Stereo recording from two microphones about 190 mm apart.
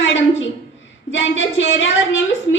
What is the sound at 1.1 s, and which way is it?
A woman's voice, 75° left (ahead or behind).